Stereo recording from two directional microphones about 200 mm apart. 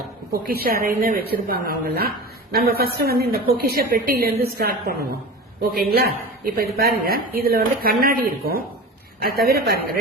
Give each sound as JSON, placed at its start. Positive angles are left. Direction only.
{"t": 0.4, "sound": "speech", "side_deg": -50}